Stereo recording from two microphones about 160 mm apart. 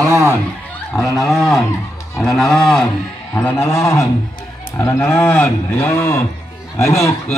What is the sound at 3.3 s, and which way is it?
Speech, 15° left (ahead or behind).